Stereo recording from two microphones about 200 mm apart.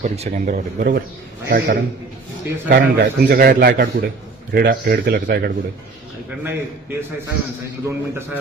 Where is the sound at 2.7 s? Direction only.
55° right (ahead or behind).